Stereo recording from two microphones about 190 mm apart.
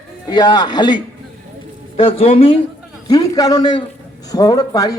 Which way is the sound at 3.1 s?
20° left (ahead or behind).